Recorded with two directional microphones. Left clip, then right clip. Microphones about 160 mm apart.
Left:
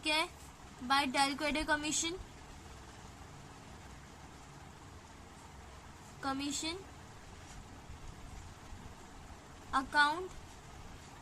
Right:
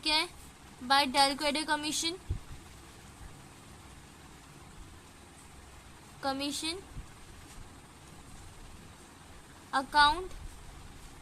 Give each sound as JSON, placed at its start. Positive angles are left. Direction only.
{"t": 0.0, "sound": "a woman's voice", "side_deg": -25}
{"t": 6.2, "sound": "a woman's voice", "side_deg": -25}
{"t": 9.7, "sound": "a woman's voice", "side_deg": -25}